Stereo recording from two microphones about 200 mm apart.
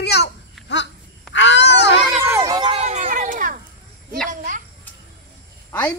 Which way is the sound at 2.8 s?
35° right (ahead or behind).